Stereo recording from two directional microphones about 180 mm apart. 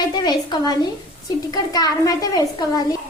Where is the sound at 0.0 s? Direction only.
20° left (ahead or behind).